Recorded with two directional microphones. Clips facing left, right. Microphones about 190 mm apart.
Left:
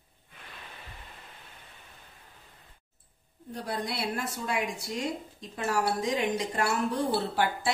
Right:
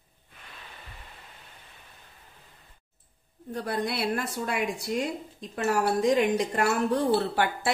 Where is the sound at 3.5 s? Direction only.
60° right (ahead or behind).